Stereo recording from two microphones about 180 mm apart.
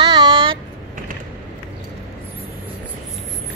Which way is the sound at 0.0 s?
25° right (ahead or behind).